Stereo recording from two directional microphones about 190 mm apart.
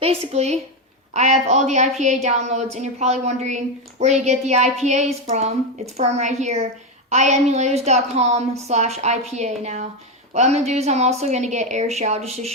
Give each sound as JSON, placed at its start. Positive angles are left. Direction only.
{"t": 0.0, "sound": "a woman's voice", "side_deg": -35}